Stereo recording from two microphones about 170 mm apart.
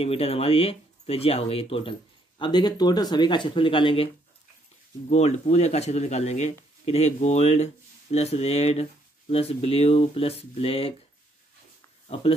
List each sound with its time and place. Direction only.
0.0 s speech: 35° left (ahead or behind)
5.1 s speech: 40° left (ahead or behind)
12.1 s speech: 35° left (ahead or behind)